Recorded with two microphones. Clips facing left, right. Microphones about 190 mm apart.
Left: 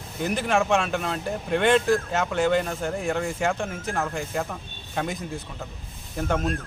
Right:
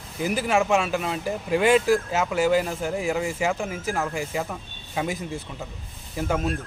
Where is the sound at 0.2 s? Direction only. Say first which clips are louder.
Right 1 dB; 5° right (ahead or behind).